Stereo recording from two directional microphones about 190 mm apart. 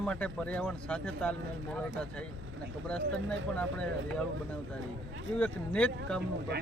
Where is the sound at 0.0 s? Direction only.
5° left (ahead or behind).